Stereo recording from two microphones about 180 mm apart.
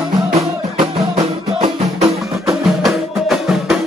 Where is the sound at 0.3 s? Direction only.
35° right (ahead or behind).